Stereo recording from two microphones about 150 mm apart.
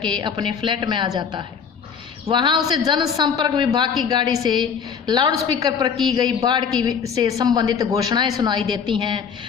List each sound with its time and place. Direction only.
0.1 s a woman's voice: 30° right (ahead or behind)